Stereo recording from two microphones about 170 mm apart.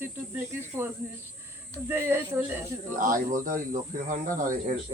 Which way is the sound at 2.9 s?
50° right (ahead or behind).